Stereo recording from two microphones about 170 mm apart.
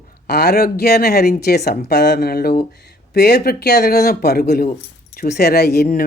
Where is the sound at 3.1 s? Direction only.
80° left.